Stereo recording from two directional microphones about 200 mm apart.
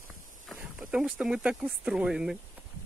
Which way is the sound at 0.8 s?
5° right (ahead or behind).